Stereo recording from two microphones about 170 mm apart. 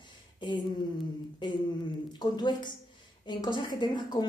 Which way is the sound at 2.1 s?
25° left (ahead or behind).